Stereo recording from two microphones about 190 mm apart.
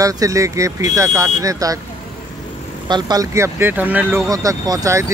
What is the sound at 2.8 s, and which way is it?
Speech, 20° right (ahead or behind).